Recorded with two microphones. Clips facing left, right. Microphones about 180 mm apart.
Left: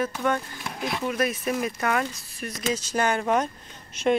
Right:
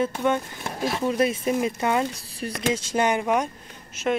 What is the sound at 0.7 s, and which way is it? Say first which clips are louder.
Speech: right 3 dB; 40° right (ahead or behind).